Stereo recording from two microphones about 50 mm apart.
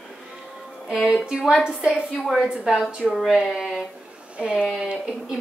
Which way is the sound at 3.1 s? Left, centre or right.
Centre.